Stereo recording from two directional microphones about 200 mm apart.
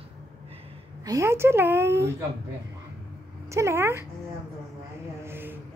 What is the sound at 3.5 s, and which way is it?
Speech, 15° right (ahead or behind).